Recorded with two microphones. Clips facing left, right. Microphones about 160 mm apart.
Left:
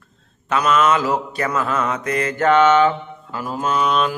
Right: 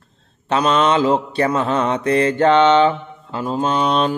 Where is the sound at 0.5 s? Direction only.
30° right (ahead or behind).